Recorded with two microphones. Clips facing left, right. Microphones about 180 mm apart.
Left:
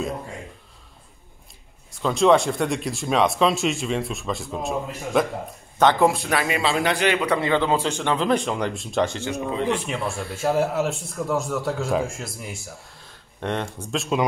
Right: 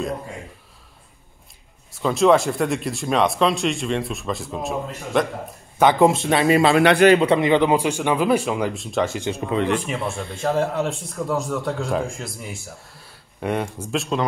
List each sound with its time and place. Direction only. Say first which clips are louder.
2.0 s speech: right 1 dB; centre (ahead or behind)
5.8 s a man's voice: right 2 dB; 10° right (ahead or behind)
6.0 s speech: right 4 dB; 25° right (ahead or behind)
6.6 s a man's voice: right 8 dB; 65° right (ahead or behind)
7.2 s speech: right 5 dB; 20° right (ahead or behind)